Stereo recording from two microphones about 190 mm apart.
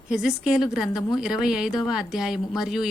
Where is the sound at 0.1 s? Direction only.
5° right (ahead or behind).